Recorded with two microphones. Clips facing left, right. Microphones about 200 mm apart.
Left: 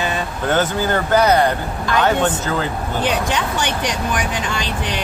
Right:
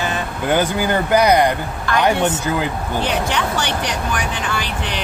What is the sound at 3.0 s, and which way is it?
Speech, 15° left (ahead or behind).